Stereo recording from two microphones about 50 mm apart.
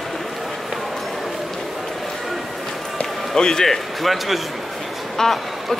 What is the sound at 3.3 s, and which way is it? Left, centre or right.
A man's voice, centre.